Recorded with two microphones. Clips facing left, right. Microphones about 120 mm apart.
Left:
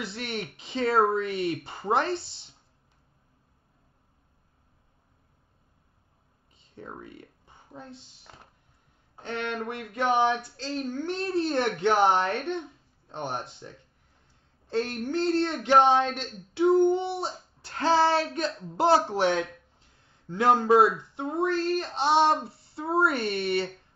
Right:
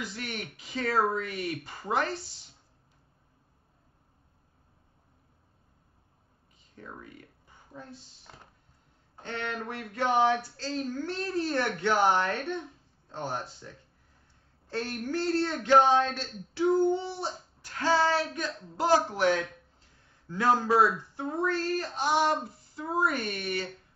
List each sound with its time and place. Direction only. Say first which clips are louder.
0.2 s speech: left 4 dB; 25° left (ahead or behind)
6.7 s speech: left 4 dB; 25° left (ahead or behind)
8.3 s a sound: left 1 dB; centre (ahead or behind)
9.1 s speech: left 3 dB; 15° left (ahead or behind)